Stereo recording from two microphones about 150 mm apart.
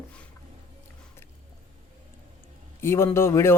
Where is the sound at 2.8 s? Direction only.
15° left (ahead or behind).